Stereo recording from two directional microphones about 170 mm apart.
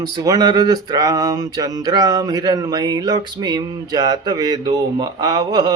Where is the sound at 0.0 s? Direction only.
25° right (ahead or behind).